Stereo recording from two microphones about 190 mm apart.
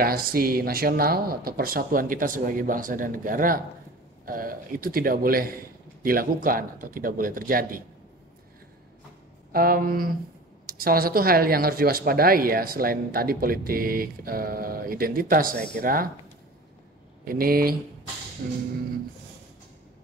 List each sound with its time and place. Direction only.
0.0 s speech: 50° right (ahead or behind)
9.5 s speech: 50° right (ahead or behind)
17.2 s speech: 50° right (ahead or behind)